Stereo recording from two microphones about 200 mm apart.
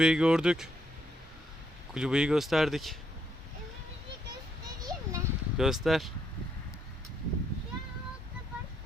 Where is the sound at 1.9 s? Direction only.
5° right (ahead or behind).